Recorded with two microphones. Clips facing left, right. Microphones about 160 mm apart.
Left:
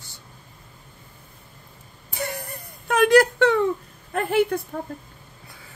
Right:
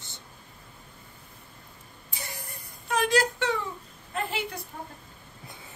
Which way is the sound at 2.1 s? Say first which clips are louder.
Left 12 dB; 60° left (ahead or behind).